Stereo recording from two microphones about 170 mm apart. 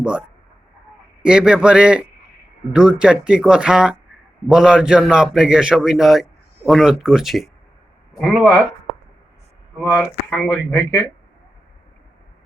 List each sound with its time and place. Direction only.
0.0 s a man's voice: 5° right (ahead or behind)
9.8 s a man's voice: 5° right (ahead or behind)
10.2 s speech: 10° left (ahead or behind)